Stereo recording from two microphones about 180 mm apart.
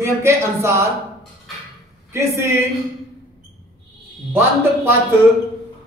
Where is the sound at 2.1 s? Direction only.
15° right (ahead or behind).